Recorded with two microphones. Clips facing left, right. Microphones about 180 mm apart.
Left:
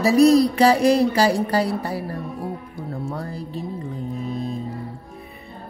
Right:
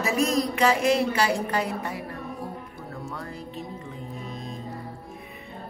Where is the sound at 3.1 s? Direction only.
35° left (ahead or behind).